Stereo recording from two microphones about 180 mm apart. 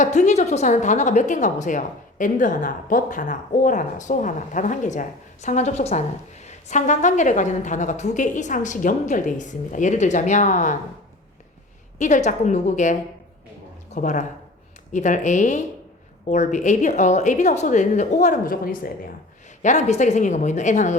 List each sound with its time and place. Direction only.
0.0 s a woman's voice: 45° left (ahead or behind)
11.9 s a woman's voice: 40° left (ahead or behind)